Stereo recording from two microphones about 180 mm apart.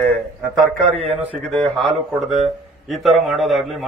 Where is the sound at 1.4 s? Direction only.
Centre (ahead or behind).